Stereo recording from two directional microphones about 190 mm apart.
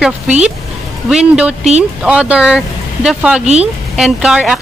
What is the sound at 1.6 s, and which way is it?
Speech, 35° right (ahead or behind).